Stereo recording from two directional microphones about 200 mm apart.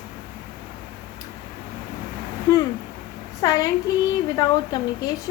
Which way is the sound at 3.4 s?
20° left (ahead or behind).